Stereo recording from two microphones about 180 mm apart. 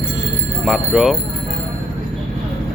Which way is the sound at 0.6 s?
Centre (ahead or behind).